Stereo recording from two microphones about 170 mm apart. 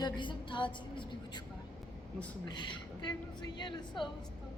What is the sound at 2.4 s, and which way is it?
A woman's voice, 25° left (ahead or behind).